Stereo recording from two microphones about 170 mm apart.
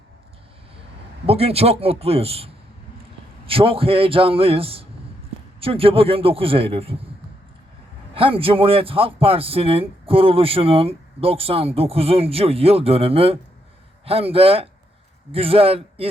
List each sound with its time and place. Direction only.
1.3 s a man's voice: 35° right (ahead or behind)
8.1 s a man's voice: 30° right (ahead or behind)